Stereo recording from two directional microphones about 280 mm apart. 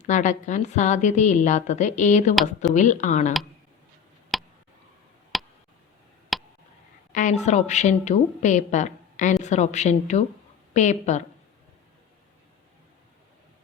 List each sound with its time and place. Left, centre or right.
0.0 s a woman's voice: left
4.3 s tick: centre
5.3 s a sound: centre
7.1 s a woman's voice: left